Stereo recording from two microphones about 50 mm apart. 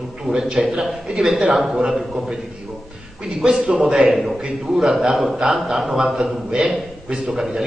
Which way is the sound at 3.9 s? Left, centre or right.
Centre.